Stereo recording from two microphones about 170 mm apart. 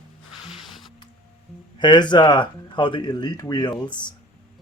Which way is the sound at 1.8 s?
25° left (ahead or behind).